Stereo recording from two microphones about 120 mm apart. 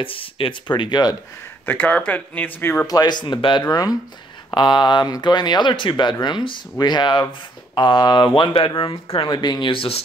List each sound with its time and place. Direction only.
0.0 s speech: 45° left (ahead or behind)
1.7 s speech: 10° left (ahead or behind)
2.9 s speech: 35° left (ahead or behind)
3.7 s speech: 30° left (ahead or behind); by 10.0 s 50° left (ahead or behind)